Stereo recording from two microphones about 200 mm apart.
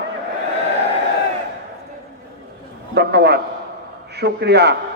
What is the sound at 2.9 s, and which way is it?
Wind instrument, 55° right (ahead or behind).